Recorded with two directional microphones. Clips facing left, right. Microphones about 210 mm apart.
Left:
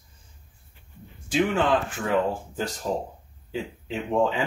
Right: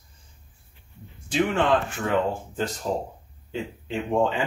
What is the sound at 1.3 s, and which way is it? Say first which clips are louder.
Speech: even; 5° left (ahead or behind).